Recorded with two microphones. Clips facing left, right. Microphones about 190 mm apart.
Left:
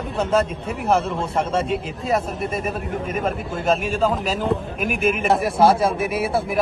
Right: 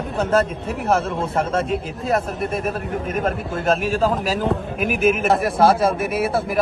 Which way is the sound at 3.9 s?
5° right (ahead or behind).